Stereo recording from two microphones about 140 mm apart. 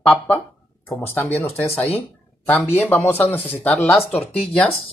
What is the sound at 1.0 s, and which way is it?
Speech, 10° left (ahead or behind).